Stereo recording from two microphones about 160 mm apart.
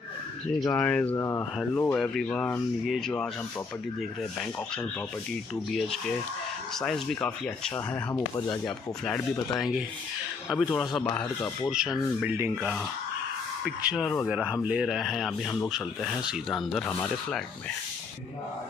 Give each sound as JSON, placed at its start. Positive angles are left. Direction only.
{"t": 0.7, "sound": "speech", "side_deg": 15}
{"t": 1.8, "sound": "speech", "side_deg": 5}
{"t": 6.7, "sound": "speech", "side_deg": 5}
{"t": 7.7, "sound": "speech", "side_deg": 20}
{"t": 8.6, "sound": "speech", "side_deg": 5}
{"t": 10.5, "sound": "speech", "side_deg": -5}
{"t": 11.0, "sound": "speech", "side_deg": 10}
{"t": 11.7, "sound": "speech", "side_deg": -5}